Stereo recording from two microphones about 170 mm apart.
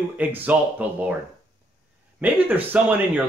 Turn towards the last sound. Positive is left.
turn(degrees=-10)  # may be behind; listen again after turning